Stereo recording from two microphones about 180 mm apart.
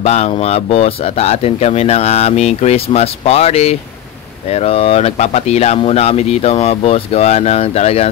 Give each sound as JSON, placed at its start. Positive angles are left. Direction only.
{"t": 0.0, "sound": "speech", "side_deg": 35}